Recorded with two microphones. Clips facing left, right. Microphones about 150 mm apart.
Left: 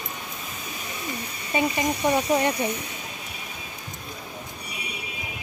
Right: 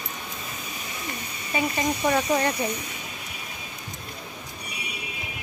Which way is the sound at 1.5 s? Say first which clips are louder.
Left 2 dB; 15° left (ahead or behind).